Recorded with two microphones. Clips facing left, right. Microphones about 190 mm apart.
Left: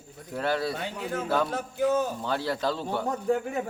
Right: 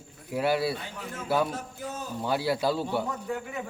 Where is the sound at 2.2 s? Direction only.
10° right (ahead or behind).